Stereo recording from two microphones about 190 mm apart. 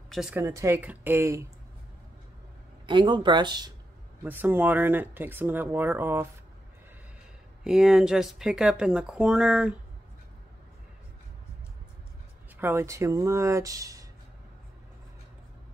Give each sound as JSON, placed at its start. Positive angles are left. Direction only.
{"t": 0.1, "sound": "speech", "side_deg": 0}
{"t": 0.4, "sound": "speech", "side_deg": -15}
{"t": 2.9, "sound": "speech", "side_deg": -25}
{"t": 4.2, "sound": "speech", "side_deg": -10}
{"t": 7.6, "sound": "speech", "side_deg": -5}
{"t": 12.5, "sound": "speech", "side_deg": -10}